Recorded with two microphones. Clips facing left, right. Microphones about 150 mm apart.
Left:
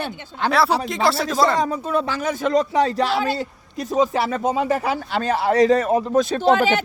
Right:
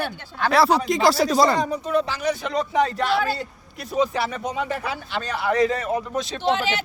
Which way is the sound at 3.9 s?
45° left (ahead or behind).